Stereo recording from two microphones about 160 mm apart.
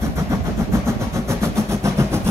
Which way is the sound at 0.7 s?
20° right (ahead or behind).